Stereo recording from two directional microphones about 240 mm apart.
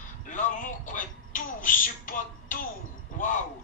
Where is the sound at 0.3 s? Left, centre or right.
Left.